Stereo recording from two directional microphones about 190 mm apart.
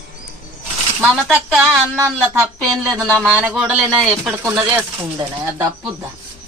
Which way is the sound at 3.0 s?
5° left (ahead or behind).